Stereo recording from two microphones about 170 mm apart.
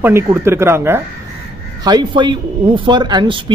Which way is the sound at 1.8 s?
25° right (ahead or behind).